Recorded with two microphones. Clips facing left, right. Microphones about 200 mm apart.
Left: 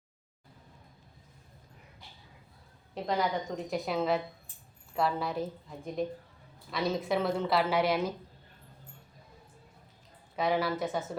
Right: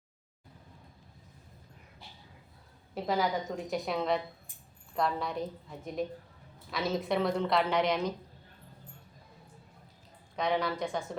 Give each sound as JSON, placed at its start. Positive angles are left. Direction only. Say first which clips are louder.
{"t": 2.9, "sound": "a woman's voice", "louder": "even", "side_deg": -5}
{"t": 10.3, "sound": "a woman's voice", "louder": "left 1 dB", "side_deg": 5}